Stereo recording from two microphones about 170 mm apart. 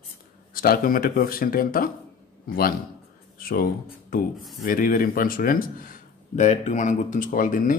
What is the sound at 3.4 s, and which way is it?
Speech, 60° left (ahead or behind).